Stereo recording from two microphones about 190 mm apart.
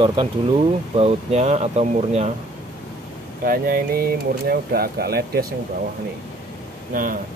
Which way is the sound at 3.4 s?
50° right (ahead or behind).